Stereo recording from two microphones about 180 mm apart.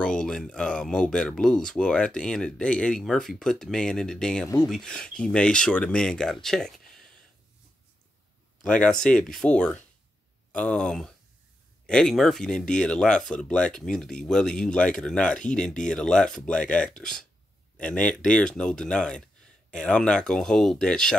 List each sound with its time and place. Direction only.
0.0 s speech: 5° left (ahead or behind)
8.6 s speech: 5° left (ahead or behind)